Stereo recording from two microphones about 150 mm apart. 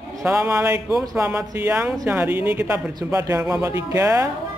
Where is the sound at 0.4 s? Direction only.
15° right (ahead or behind).